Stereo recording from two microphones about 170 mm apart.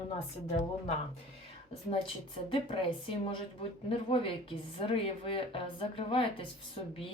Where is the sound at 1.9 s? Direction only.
30° left (ahead or behind).